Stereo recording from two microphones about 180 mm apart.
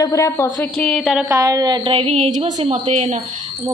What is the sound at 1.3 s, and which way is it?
A woman's voice, 20° right (ahead or behind).